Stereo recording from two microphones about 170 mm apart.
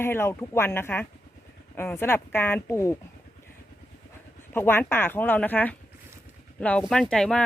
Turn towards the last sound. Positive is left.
turn(degrees=5)  # may be behind; listen again after turning